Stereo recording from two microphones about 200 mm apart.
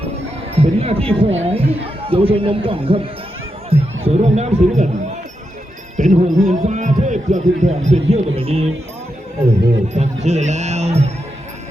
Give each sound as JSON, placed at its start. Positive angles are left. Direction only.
{"t": 0.5, "sound": "a man's voice", "side_deg": -30}
{"t": 9.9, "sound": "a man's voice", "side_deg": -35}